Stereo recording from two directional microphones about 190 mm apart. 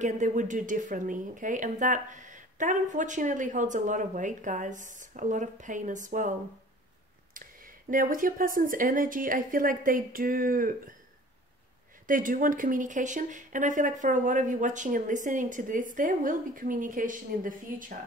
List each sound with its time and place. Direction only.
0.0 s speech: 40° right (ahead or behind)
7.3 s speech: 45° right (ahead or behind)
12.1 s speech: 45° right (ahead or behind)